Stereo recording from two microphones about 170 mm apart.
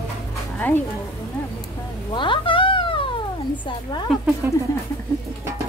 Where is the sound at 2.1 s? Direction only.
30° left (ahead or behind).